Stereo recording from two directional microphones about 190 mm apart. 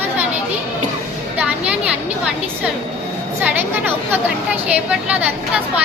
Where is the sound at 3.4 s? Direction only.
10° right (ahead or behind).